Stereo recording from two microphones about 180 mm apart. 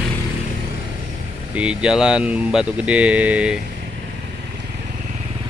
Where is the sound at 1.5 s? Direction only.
5° right (ahead or behind).